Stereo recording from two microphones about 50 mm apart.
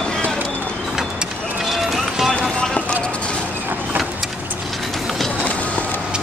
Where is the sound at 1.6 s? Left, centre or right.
Centre.